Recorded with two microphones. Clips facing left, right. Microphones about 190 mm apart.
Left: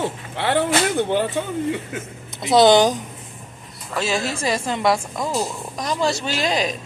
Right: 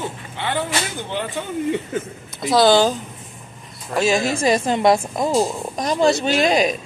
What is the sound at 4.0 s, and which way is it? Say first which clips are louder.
A woman's voice: right 5 dB; 15° right (ahead or behind).